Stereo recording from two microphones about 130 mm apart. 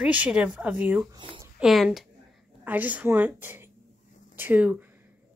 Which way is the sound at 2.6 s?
10° right (ahead or behind).